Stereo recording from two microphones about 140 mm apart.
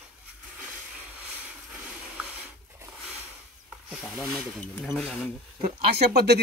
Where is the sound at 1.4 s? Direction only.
10° right (ahead or behind).